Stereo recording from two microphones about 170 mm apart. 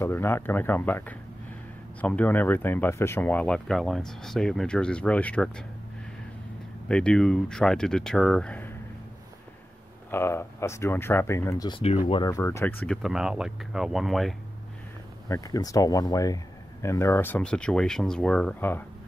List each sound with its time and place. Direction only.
0.0 s speech: 15° left (ahead or behind)
6.9 s speech: 5° left (ahead or behind)
10.1 s speech: 15° left (ahead or behind)
12.8 s speech: centre (ahead or behind)
15.2 s speech: 20° left (ahead or behind)